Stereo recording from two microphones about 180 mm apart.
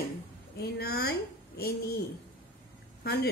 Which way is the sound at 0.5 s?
65° left (ahead or behind).